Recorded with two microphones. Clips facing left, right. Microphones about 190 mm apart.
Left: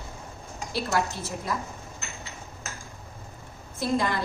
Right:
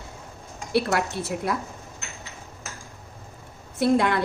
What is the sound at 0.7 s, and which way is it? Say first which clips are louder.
Speech: right 4 dB; 65° right (ahead or behind).